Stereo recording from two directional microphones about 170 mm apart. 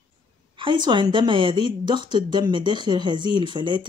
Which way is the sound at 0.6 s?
25° right (ahead or behind).